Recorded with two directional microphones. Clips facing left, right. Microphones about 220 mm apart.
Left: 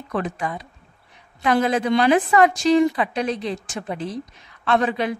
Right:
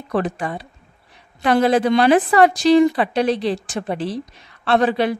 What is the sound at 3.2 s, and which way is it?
Speech, 75° right (ahead or behind).